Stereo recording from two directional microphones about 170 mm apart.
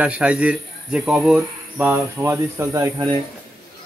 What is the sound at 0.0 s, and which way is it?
Speech, 5° right (ahead or behind).